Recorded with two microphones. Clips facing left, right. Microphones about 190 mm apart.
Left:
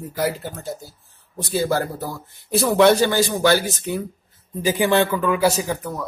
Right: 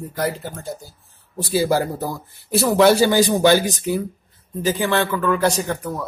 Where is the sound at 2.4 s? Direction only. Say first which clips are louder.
Even; centre (ahead or behind).